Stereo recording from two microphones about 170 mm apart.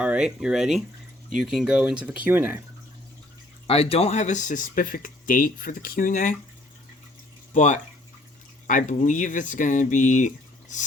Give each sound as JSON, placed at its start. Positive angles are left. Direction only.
{"t": 0.0, "sound": "speech", "side_deg": -5}
{"t": 3.7, "sound": "speech", "side_deg": 35}
{"t": 7.5, "sound": "speech", "side_deg": 45}